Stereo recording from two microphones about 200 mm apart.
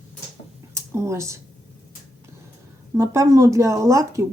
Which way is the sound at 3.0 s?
15° right (ahead or behind).